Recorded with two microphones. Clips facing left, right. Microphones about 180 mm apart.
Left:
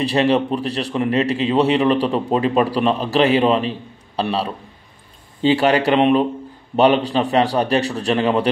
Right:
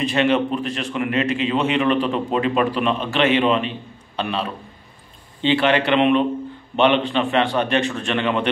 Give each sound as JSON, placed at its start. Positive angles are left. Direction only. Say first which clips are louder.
{"t": 0.0, "sound": "a man's voice", "louder": "left 2 dB", "side_deg": 35}